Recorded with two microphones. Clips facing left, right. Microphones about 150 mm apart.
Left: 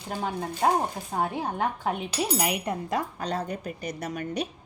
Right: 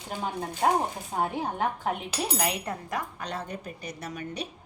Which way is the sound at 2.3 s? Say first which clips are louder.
Left 2 dB; 10° left (ahead or behind).